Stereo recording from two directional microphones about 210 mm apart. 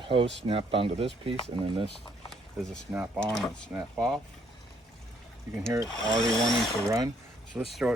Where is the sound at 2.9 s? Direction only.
10° right (ahead or behind).